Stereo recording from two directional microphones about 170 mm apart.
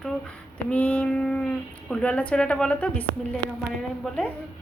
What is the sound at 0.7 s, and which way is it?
Speech, 10° left (ahead or behind).